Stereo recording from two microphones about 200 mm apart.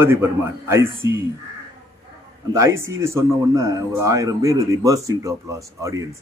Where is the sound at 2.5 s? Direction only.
15° right (ahead or behind).